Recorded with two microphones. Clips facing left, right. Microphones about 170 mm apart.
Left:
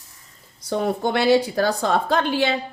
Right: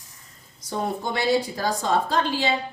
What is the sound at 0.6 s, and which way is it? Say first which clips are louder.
A woman's voice: left 5 dB; 70° left (ahead or behind).